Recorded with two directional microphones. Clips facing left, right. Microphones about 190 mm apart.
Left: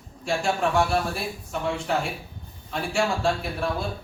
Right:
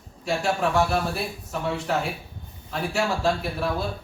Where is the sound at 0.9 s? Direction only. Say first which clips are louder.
Even; centre (ahead or behind).